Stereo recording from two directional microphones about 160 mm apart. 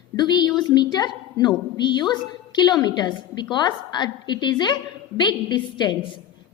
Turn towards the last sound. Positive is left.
turn(degrees=25)  # may be behind; listen again after turning